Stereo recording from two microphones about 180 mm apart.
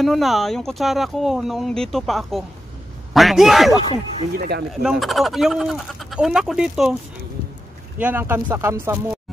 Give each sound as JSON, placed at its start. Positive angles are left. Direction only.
{"t": 0.0, "sound": "speech", "side_deg": 0}
{"t": 4.4, "sound": "speech", "side_deg": -65}
{"t": 4.8, "sound": "speech", "side_deg": 0}
{"t": 8.0, "sound": "speech", "side_deg": -10}